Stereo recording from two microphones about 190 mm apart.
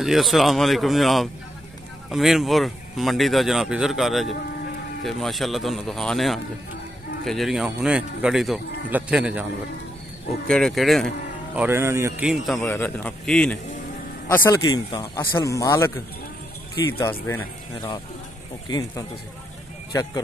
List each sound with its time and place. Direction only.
0.0 s speech: centre (ahead or behind)
10.5 s speech: centre (ahead or behind)
11.5 s speech: 10° right (ahead or behind)
12.5 s speech: 10° left (ahead or behind)
14.6 s a man's voice: 20° left (ahead or behind)
17.0 s a man's voice: 15° left (ahead or behind)